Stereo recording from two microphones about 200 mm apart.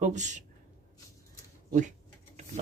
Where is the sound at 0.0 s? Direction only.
35° right (ahead or behind).